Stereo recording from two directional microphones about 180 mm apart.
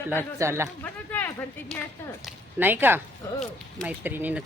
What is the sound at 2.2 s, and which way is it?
Speech, 10° right (ahead or behind).